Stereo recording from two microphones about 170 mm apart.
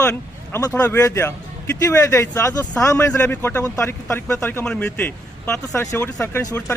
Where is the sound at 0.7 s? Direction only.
15° left (ahead or behind).